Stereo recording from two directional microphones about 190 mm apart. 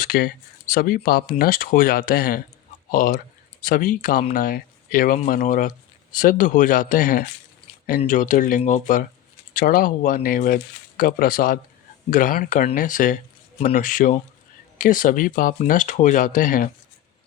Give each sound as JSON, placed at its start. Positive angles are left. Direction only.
{"t": 0.0, "sound": "speech", "side_deg": 50}